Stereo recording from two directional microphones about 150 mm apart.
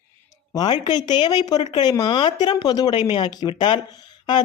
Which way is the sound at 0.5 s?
30° left (ahead or behind).